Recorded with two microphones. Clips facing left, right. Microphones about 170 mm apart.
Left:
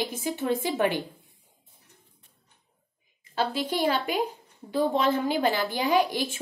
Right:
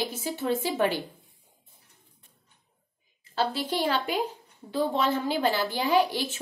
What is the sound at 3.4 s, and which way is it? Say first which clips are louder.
A woman's voice: left 1 dB; 15° left (ahead or behind).